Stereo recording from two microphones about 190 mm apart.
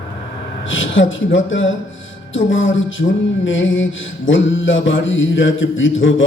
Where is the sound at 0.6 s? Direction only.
85° left.